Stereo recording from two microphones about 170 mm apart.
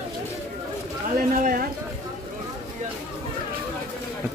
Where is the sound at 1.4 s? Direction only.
55° right (ahead or behind).